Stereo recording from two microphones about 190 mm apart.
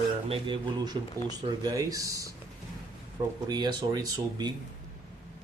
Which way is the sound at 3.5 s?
20° right (ahead or behind).